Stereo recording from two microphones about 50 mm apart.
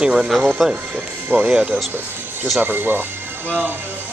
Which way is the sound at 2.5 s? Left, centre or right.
Right.